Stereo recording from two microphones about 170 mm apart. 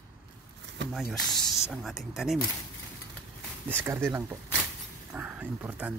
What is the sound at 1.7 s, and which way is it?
Speech, centre (ahead or behind).